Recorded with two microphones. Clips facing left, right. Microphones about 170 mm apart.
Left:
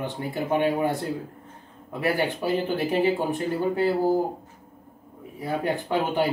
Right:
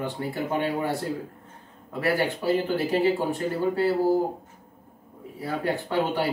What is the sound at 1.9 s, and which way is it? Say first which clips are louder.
Speech: even; 20° left (ahead or behind).